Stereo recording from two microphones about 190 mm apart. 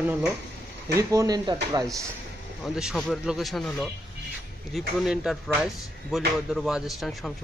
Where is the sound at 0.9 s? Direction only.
15° right (ahead or behind).